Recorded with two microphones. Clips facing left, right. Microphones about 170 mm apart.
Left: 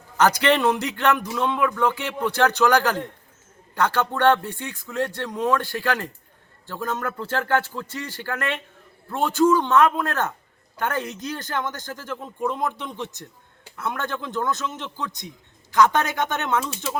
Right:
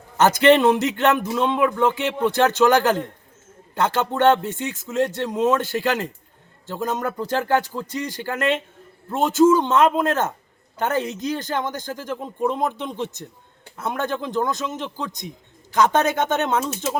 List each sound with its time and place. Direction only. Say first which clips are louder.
0.2 s speech: right 4 dB; 20° right (ahead or behind)